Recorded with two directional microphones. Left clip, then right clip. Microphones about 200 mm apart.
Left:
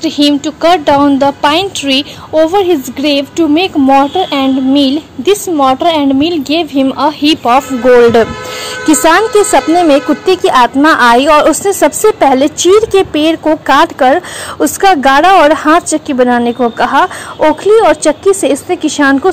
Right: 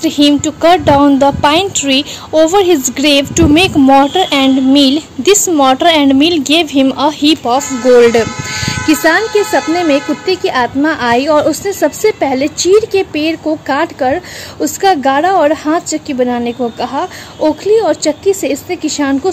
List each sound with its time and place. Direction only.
0.0 s a woman's voice: 5° right (ahead or behind)
7.5 s a woman's voice: 15° left (ahead or behind)